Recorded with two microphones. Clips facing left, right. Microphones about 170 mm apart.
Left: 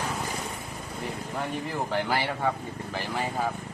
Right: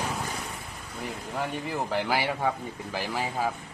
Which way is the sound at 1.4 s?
Centre (ahead or behind).